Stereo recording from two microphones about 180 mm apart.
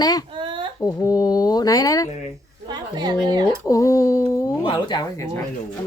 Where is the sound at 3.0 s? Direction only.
25° right (ahead or behind).